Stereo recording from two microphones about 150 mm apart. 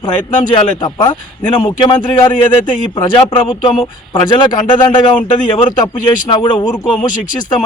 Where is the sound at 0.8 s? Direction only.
30° left (ahead or behind).